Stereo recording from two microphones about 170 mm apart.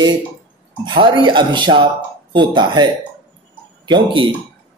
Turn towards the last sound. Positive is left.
turn(degrees=-30)  # may be behind; listen again after turning